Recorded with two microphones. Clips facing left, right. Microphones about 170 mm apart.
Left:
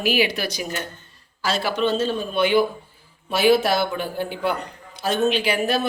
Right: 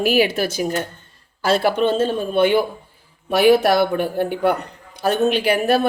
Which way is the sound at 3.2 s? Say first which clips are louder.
Right 4 dB; 65° right (ahead or behind).